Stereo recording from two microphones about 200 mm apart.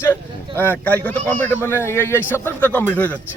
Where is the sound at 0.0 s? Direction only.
10° left (ahead or behind).